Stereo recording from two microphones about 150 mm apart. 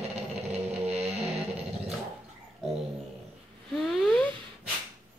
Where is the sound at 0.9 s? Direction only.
45° right (ahead or behind).